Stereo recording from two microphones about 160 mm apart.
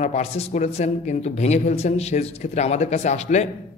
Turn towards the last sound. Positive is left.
turn(degrees=45)  # may be behind; listen again after turning